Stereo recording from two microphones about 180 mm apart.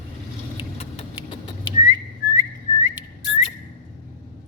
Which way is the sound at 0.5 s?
30° left (ahead or behind).